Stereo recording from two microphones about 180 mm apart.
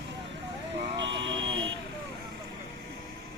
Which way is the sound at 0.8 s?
75° right (ahead or behind).